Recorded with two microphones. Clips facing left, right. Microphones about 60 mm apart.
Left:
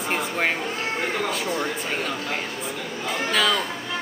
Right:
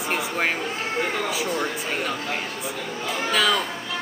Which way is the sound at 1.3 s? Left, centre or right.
Centre.